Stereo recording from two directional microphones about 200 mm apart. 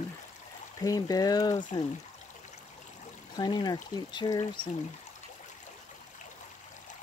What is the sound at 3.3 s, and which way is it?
Speech, 20° left (ahead or behind).